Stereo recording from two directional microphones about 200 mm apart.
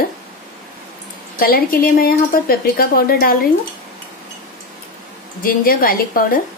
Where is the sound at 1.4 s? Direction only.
50° left (ahead or behind).